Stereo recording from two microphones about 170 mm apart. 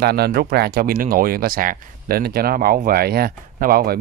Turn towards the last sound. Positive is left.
turn(degrees=-60)  # may be behind; listen again after turning